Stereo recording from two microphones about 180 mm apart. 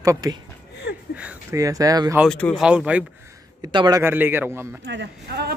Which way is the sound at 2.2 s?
5° left (ahead or behind).